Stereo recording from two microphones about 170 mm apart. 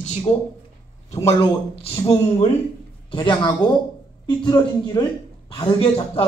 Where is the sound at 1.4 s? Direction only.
35° left (ahead or behind).